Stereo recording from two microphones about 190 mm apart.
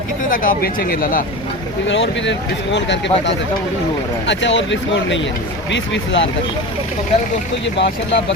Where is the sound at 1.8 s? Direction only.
75° left (ahead or behind).